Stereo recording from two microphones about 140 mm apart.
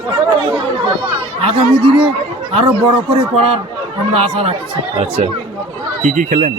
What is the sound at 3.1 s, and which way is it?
A man's voice, 45° right (ahead or behind).